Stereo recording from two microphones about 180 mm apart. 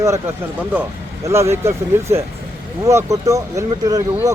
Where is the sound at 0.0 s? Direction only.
15° right (ahead or behind).